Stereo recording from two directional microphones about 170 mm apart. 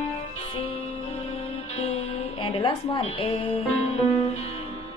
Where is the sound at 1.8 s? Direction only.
35° left (ahead or behind).